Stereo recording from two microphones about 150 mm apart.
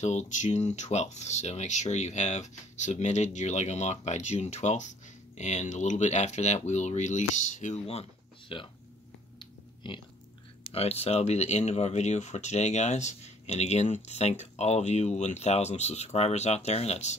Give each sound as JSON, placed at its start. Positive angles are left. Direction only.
{"t": 0.0, "sound": "speech", "side_deg": 50}
{"t": 10.7, "sound": "speech", "side_deg": 45}